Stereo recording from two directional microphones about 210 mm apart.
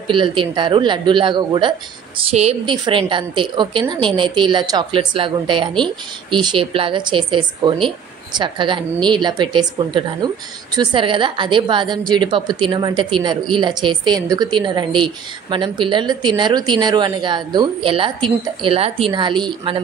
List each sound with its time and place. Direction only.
0.1 s a woman's voice: 25° right (ahead or behind)